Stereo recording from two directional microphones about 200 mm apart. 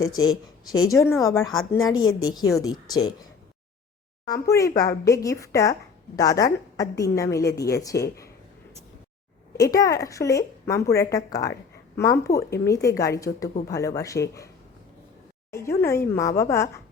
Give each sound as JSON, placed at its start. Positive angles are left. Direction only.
{"t": 0.2, "sound": "a woman's voice", "side_deg": 20}
{"t": 2.0, "sound": "a woman's voice", "side_deg": 90}
{"t": 2.3, "sound": "a woman's voice", "side_deg": 15}
{"t": 4.3, "sound": "a woman's voice", "side_deg": 15}
{"t": 9.6, "sound": "a woman's voice", "side_deg": 15}
{"t": 15.8, "sound": "a woman's voice", "side_deg": 15}